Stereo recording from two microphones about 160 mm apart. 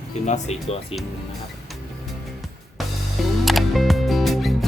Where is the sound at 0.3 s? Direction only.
45° left (ahead or behind).